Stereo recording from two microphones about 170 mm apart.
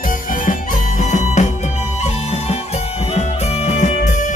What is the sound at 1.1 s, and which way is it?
Music, 45° left (ahead or behind).